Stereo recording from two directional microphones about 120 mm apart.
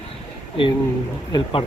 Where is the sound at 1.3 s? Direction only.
50° left (ahead or behind).